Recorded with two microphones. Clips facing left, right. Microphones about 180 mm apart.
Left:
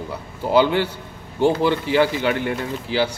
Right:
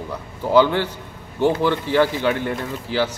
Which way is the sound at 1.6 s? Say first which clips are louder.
Even; 15° left (ahead or behind).